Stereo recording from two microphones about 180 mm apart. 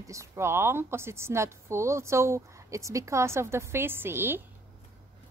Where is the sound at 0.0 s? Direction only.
15° right (ahead or behind).